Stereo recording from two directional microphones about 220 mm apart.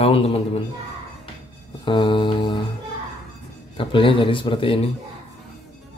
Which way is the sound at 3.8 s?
20° left (ahead or behind).